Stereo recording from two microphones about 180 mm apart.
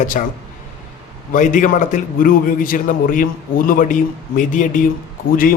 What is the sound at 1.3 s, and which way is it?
A man's voice, 45° left (ahead or behind).